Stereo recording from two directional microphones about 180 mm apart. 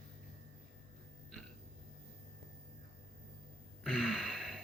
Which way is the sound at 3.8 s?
Centre (ahead or behind).